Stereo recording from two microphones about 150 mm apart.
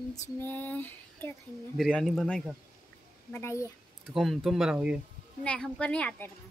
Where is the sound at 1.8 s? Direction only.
Centre (ahead or behind).